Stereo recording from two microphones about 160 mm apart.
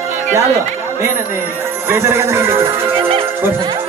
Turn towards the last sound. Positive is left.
turn(degrees=-35)  # may be behind; listen again after turning